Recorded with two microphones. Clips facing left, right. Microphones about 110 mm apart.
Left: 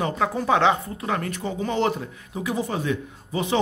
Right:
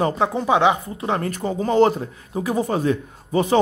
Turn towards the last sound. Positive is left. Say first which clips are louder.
# right 6 dB
turn(degrees=-40)  # may be behind; listen again after turning